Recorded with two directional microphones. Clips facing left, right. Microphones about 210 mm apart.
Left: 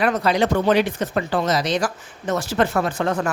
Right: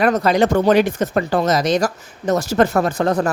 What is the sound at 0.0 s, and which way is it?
Speech, 45° right (ahead or behind).